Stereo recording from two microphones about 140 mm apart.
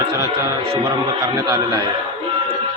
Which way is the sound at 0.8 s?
25° right (ahead or behind).